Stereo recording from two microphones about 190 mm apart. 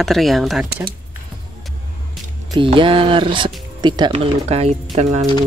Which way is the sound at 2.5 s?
25° right (ahead or behind).